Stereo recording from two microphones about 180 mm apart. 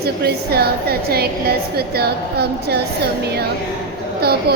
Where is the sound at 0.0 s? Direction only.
60° right (ahead or behind).